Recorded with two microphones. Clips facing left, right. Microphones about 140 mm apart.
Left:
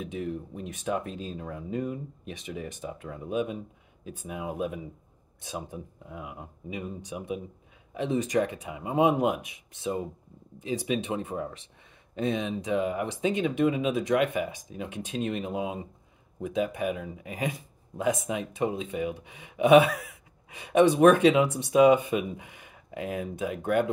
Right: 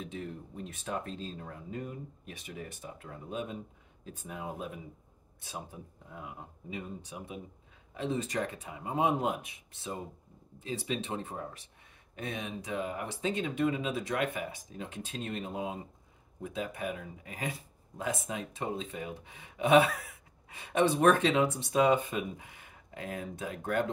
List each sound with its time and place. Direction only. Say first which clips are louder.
0.0 s speech: left 7 dB; 15° left (ahead or behind)